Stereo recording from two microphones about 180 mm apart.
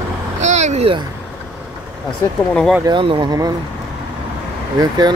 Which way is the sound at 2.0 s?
5° left (ahead or behind).